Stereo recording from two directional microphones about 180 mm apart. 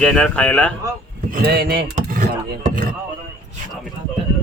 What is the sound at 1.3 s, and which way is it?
Speech, 60° right (ahead or behind).